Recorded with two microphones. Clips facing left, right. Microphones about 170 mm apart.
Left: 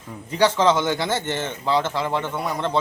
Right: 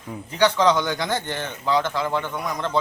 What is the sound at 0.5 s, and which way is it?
A man's voice, 25° left (ahead or behind).